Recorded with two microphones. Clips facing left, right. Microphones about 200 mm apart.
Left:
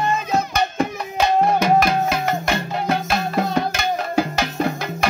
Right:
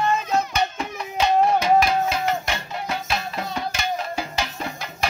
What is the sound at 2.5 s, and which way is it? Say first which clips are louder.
Music: left 7 dB; 45° left (ahead or behind).